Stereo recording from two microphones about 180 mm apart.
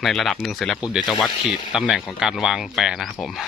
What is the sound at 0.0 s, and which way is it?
Speech, centre (ahead or behind).